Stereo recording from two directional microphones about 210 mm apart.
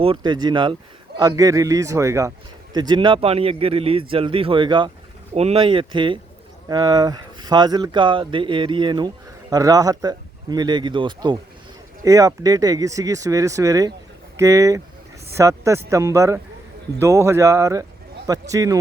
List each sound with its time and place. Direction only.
0.0 s speech: 25° right (ahead or behind)